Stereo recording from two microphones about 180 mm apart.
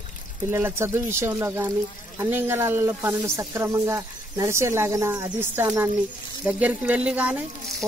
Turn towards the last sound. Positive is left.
turn(degrees=-10)  # may be behind; listen again after turning